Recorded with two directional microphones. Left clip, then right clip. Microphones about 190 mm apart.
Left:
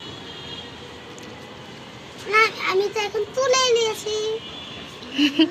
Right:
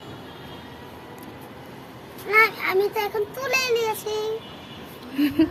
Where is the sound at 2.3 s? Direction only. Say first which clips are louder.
Even; 15° right (ahead or behind).